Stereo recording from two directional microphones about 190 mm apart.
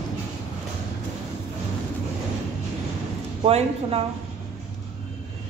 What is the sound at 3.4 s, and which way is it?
Speech, 30° right (ahead or behind).